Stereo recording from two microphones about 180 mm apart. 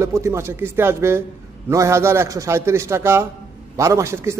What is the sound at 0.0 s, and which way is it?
A man's voice, 15° right (ahead or behind).